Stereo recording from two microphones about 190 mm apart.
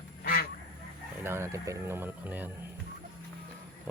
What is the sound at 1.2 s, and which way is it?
Speech, 15° right (ahead or behind).